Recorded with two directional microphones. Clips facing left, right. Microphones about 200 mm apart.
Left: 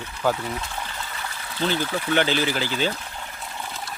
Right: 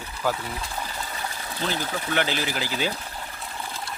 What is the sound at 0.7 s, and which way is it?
Trickle, 10° right (ahead or behind).